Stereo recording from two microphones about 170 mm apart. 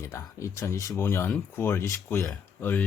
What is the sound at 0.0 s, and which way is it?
Speech, 15° left (ahead or behind).